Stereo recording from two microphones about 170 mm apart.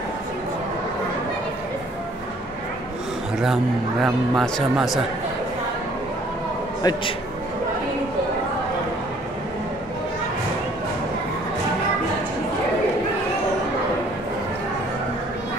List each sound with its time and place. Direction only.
4.0 s speech: centre (ahead or behind)
6.8 s a man's voice: 25° left (ahead or behind)